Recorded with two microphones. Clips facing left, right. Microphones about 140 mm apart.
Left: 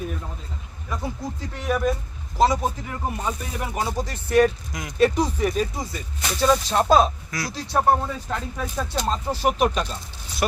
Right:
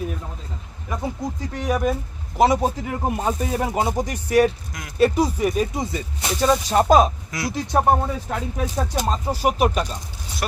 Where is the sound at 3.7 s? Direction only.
20° right (ahead or behind).